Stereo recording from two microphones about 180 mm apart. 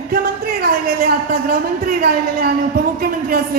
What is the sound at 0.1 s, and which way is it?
Speech, 55° right (ahead or behind).